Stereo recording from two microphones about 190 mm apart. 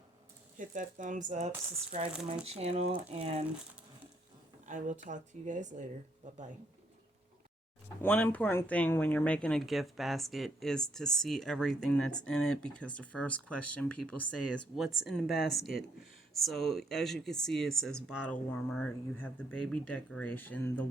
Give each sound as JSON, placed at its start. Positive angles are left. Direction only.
{"t": 0.5, "sound": "speech", "side_deg": -45}
{"t": 4.6, "sound": "speech", "side_deg": -40}
{"t": 8.0, "sound": "speech", "side_deg": 10}